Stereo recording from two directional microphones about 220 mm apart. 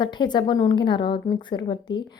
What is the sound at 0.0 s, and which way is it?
A woman's voice, 20° left (ahead or behind).